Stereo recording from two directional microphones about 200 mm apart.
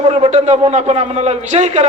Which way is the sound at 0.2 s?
35° right (ahead or behind).